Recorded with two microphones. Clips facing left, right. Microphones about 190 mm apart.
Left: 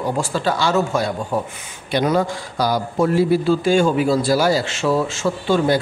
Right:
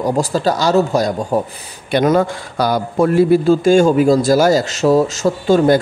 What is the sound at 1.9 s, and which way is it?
A man's voice, 55° right (ahead or behind).